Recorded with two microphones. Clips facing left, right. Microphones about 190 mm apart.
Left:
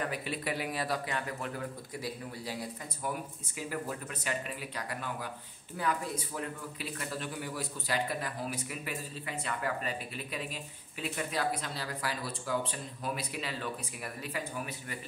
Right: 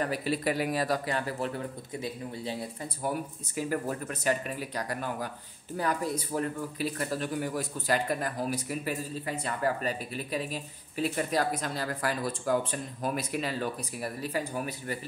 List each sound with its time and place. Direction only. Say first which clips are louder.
0.0 s a man's voice: right 6 dB; 35° right (ahead or behind)
2.0 s speech: right 4 dB; 25° right (ahead or behind)
3.0 s speech: right 5 dB; 40° right (ahead or behind)